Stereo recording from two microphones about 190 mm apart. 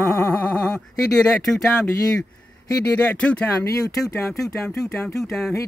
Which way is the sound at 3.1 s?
5° left (ahead or behind).